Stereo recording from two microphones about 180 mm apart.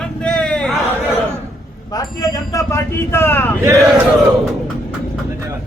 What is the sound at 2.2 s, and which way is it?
Speech, 20° left (ahead or behind).